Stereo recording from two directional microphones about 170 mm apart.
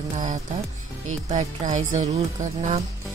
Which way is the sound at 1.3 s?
45° right (ahead or behind).